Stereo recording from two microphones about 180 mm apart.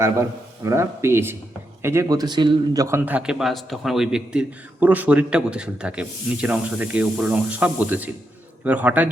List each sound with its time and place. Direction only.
0.0 s a man's voice: 15° right (ahead or behind)